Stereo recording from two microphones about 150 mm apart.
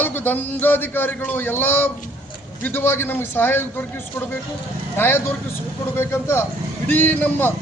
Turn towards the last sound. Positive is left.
turn(degrees=10)  # may be behind; listen again after turning